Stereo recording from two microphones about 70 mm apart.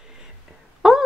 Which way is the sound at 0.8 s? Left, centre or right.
Centre.